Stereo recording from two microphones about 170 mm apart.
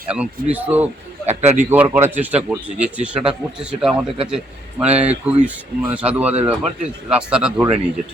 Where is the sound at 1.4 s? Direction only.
40° right (ahead or behind).